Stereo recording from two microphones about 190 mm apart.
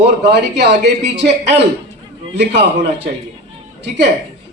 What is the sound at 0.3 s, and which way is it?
Speech, 65° right (ahead or behind).